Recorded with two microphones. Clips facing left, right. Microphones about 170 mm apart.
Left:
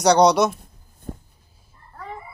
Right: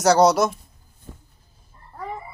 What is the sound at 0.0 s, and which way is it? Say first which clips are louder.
Speech: left 1 dB; 5° right (ahead or behind).